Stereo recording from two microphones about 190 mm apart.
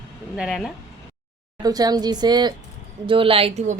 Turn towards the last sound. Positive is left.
turn(degrees=-35)  # may be behind; listen again after turning